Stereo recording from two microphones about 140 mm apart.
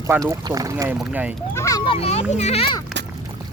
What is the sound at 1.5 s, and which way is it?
Speech, 20° left (ahead or behind).